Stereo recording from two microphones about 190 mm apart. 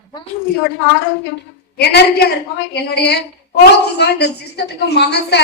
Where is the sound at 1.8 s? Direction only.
55° left (ahead or behind).